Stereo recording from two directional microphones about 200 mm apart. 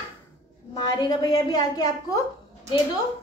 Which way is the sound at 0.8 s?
20° left (ahead or behind).